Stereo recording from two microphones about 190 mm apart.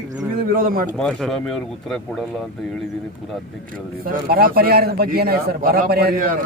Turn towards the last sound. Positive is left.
turn(degrees=-45)  # may be behind; listen again after turning